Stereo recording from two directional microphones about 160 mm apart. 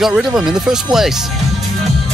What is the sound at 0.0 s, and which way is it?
Speech, 5° right (ahead or behind).